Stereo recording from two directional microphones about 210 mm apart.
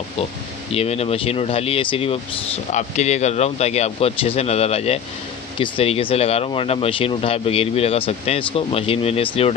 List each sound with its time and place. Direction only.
0.7 s speech: 30° left (ahead or behind)